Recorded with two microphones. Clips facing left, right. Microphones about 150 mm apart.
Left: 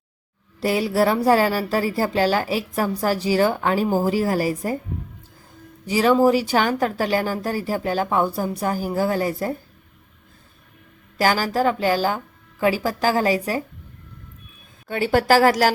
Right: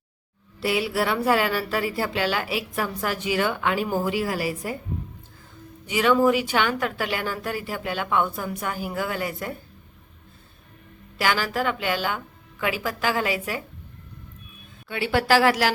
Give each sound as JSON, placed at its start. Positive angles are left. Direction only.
{"t": 0.6, "sound": "a woman's voice", "side_deg": 40}
{"t": 5.8, "sound": "a woman's voice", "side_deg": 35}
{"t": 11.2, "sound": "a woman's voice", "side_deg": 40}
{"t": 14.8, "sound": "a woman's voice", "side_deg": 40}